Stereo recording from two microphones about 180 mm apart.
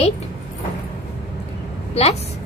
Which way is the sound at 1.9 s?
35° left (ahead or behind).